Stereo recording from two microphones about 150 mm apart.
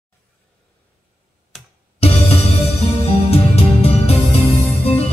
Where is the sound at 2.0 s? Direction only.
40° left (ahead or behind).